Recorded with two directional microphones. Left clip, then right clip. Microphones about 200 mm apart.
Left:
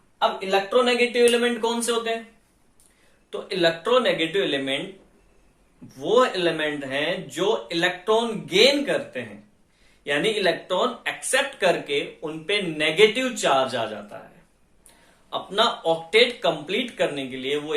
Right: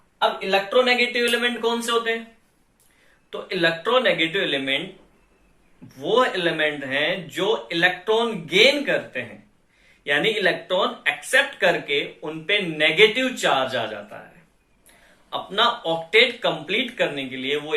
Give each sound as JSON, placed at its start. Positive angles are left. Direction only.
{"t": 0.2, "sound": "speech", "side_deg": 30}
{"t": 3.5, "sound": "speech", "side_deg": 20}
{"t": 6.0, "sound": "speech", "side_deg": 20}
{"t": 10.4, "sound": "speech", "side_deg": 20}
{"t": 15.3, "sound": "speech", "side_deg": 20}